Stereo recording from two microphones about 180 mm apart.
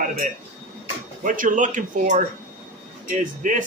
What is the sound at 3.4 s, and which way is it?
Speech, 45° right (ahead or behind).